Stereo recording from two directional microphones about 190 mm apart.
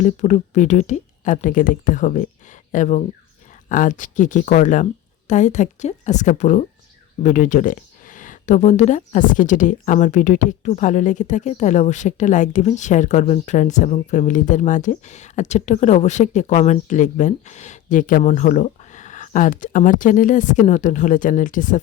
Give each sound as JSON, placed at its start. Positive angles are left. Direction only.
{"t": 0.0, "sound": "speech", "side_deg": 40}